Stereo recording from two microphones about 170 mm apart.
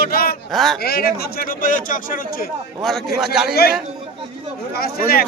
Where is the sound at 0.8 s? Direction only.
65° left (ahead or behind).